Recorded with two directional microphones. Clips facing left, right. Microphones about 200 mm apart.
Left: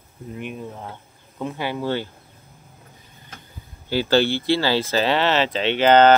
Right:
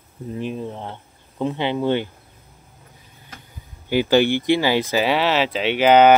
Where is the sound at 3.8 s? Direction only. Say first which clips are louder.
Right 2 dB; 15° right (ahead or behind).